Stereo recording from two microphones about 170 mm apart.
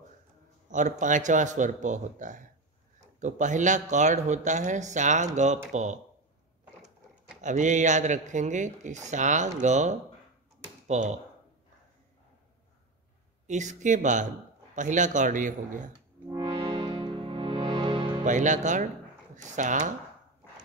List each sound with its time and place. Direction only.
0.7 s speech: 45° right (ahead or behind)
6.6 s a sound: 5° right (ahead or behind)
7.4 s speech: 45° right (ahead or behind)
13.5 s speech: 45° right (ahead or behind)
16.3 s music: 20° right (ahead or behind)
18.2 s speech: 45° right (ahead or behind)